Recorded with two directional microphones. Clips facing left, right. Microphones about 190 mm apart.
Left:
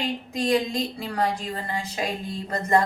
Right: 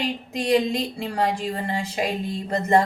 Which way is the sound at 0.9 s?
25° right (ahead or behind).